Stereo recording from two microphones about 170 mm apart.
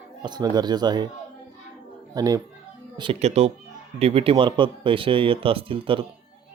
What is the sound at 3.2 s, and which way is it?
Speech, 40° right (ahead or behind).